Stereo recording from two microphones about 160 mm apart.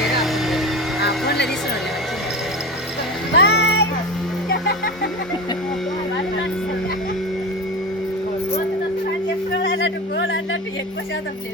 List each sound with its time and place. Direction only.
0.0 s music: centre (ahead or behind)
3.3 s music: 90° left
9.6 s a sound: 90° left